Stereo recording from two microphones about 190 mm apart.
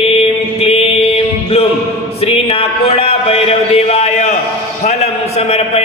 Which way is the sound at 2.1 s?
30° left (ahead or behind).